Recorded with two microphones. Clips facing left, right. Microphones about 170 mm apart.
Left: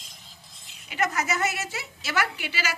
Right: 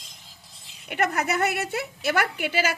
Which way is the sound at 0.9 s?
60° right (ahead or behind).